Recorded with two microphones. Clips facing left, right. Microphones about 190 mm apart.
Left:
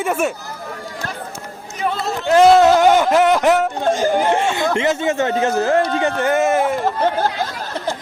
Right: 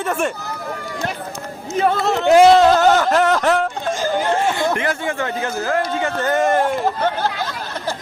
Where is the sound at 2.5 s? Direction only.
10° left (ahead or behind); by 5.8 s 25° left (ahead or behind).